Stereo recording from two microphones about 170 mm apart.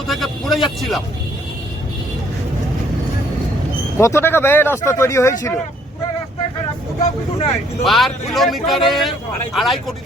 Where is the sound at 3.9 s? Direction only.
15° left (ahead or behind).